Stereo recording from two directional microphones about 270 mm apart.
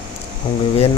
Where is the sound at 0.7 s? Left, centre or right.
Left.